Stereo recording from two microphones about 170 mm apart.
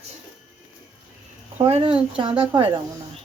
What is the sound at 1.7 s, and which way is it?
Speech, 35° right (ahead or behind).